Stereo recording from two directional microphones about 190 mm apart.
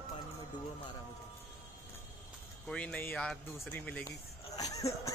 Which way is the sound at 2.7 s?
5° left (ahead or behind).